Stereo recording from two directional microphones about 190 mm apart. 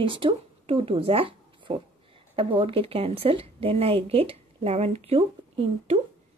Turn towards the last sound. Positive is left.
turn(degrees=-30)  # may be behind; listen again after turning